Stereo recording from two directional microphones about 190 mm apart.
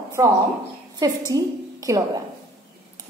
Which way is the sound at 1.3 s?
20° right (ahead or behind).